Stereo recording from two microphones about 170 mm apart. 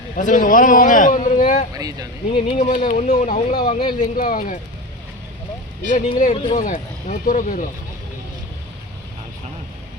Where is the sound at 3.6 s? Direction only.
30° left (ahead or behind).